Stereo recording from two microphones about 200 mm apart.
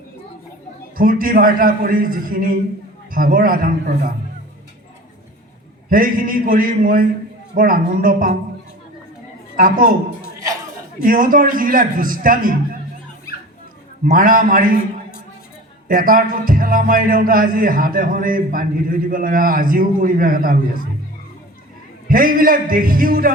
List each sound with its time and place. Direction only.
0.9 s a man's voice: 45° right (ahead or behind)
5.9 s a man's voice: 45° right (ahead or behind)
9.6 s a man's voice: 45° right (ahead or behind)
11.0 s a man's voice: 45° right (ahead or behind)
14.0 s a man's voice: 45° right (ahead or behind)
15.9 s a man's voice: 45° right (ahead or behind)
22.1 s a man's voice: 45° right (ahead or behind)